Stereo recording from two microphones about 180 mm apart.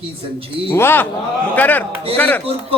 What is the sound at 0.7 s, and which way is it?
Speech, 10° left (ahead or behind).